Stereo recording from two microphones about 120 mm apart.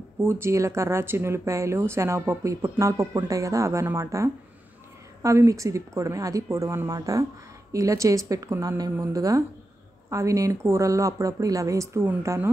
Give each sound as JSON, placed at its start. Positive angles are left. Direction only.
{"t": 0.2, "sound": "speech", "side_deg": -20}